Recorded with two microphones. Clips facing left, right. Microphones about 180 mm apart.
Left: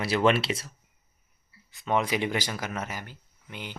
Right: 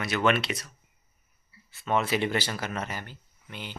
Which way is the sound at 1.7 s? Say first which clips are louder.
Even; 15° left (ahead or behind).